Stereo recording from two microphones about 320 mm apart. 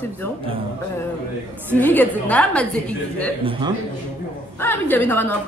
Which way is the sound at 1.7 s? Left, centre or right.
Centre.